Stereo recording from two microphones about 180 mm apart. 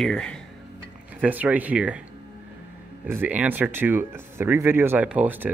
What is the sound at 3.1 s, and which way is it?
Speech, 10° right (ahead or behind).